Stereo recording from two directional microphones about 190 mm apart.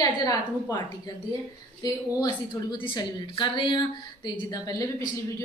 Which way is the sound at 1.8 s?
20° left (ahead or behind).